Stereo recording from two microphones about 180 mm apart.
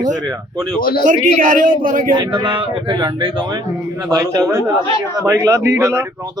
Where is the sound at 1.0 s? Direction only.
45° right (ahead or behind).